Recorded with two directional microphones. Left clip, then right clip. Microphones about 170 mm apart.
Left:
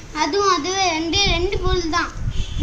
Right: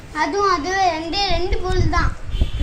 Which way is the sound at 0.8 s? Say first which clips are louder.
Even; 20° right (ahead or behind).